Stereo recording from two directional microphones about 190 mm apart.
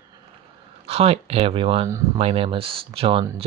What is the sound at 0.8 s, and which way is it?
Speech, 30° right (ahead or behind).